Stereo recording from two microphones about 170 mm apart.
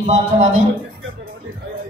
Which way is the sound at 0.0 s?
45° right (ahead or behind).